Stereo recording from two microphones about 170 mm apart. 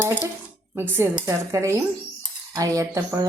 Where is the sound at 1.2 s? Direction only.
15° right (ahead or behind).